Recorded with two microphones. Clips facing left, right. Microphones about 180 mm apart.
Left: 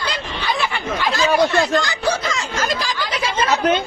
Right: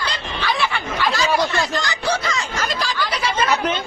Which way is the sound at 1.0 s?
55° left (ahead or behind).